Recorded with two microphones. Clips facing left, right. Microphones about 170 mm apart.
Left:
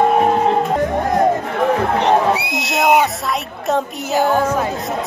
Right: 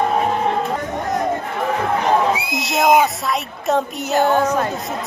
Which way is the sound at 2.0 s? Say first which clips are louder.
Even; 65° left (ahead or behind).